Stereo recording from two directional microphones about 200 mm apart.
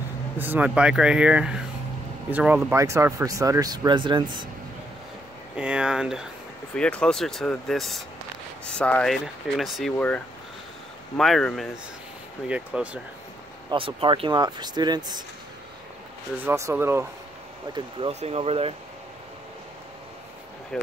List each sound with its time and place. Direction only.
0.4 s speech: 10° right (ahead or behind)
5.6 s speech: 5° right (ahead or behind)
13.7 s speech: 25° right (ahead or behind)
16.3 s speech: 10° right (ahead or behind)
17.7 s speech: 30° right (ahead or behind)
20.7 s speech: 5° left (ahead or behind)